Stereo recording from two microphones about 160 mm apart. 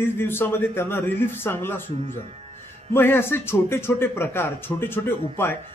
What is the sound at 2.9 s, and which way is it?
Speech, 15° left (ahead or behind).